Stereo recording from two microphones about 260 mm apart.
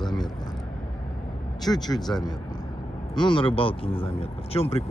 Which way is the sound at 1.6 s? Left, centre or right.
Centre.